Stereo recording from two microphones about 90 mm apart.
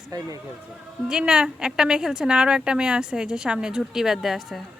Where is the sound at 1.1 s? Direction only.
10° right (ahead or behind).